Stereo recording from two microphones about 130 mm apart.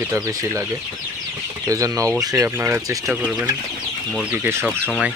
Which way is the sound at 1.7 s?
25° right (ahead or behind).